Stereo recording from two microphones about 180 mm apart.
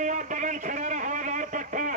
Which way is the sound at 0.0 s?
45° right (ahead or behind).